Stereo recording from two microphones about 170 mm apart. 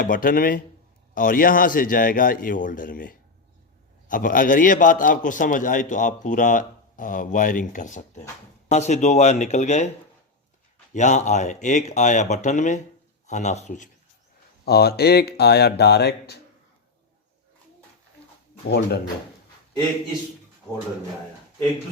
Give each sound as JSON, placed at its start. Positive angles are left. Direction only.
{"t": 0.0, "sound": "a man's voice", "side_deg": 55}
{"t": 10.9, "sound": "a man's voice", "side_deg": 45}
{"t": 14.6, "sound": "speech", "side_deg": 70}